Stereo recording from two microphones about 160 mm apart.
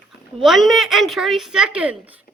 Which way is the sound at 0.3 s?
Centre (ahead or behind).